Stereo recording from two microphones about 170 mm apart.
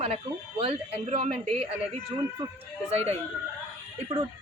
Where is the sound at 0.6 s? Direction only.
35° right (ahead or behind).